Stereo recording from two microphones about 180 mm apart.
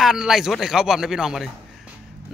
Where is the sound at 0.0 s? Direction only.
5° right (ahead or behind).